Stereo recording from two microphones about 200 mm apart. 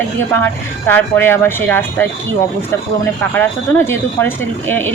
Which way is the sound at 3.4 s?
10° left (ahead or behind).